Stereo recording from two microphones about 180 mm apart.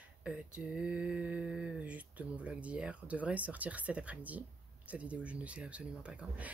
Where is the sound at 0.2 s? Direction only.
5° right (ahead or behind).